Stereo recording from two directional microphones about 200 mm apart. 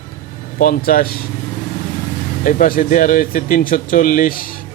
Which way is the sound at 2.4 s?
45° left (ahead or behind).